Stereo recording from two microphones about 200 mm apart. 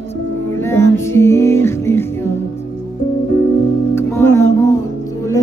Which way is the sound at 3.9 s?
10° left (ahead or behind).